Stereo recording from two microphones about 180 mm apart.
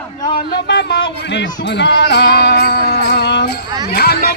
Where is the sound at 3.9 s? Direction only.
60° left (ahead or behind).